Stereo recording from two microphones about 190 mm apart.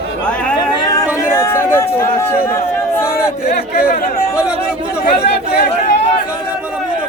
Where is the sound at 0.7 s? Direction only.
20° left (ahead or behind).